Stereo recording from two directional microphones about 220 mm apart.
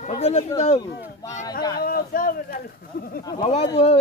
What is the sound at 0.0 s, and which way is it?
Speech, 30° left (ahead or behind).